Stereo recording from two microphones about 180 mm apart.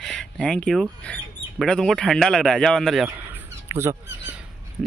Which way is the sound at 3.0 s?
10° right (ahead or behind).